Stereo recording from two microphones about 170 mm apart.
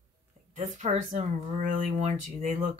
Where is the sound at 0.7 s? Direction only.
45° right (ahead or behind).